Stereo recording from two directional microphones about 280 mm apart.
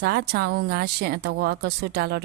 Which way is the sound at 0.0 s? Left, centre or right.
Right.